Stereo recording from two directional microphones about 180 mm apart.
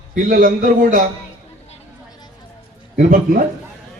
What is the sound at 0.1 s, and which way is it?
Speech, 50° right (ahead or behind).